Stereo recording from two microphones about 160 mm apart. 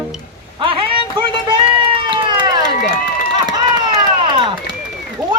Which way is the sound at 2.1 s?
30° right (ahead or behind).